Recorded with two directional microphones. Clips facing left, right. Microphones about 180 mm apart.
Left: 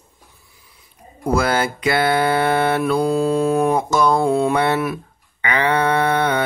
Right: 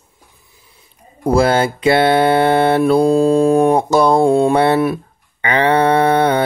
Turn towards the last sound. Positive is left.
turn(degrees=-30)  # may be behind; listen again after turning